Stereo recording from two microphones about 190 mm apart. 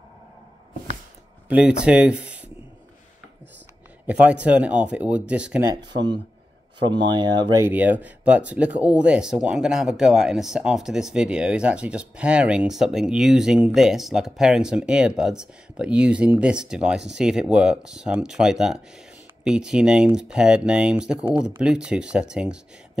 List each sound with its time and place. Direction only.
1.5 s speech: 5° right (ahead or behind)
4.1 s speech: 5° right (ahead or behind)
6.8 s speech: 25° right (ahead or behind)
7.6 s speech: 10° right (ahead or behind)